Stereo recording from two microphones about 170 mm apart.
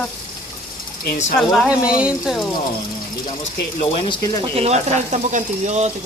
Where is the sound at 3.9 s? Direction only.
30° left (ahead or behind).